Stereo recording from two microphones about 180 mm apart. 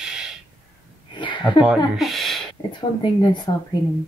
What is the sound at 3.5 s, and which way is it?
Speech, 25° left (ahead or behind).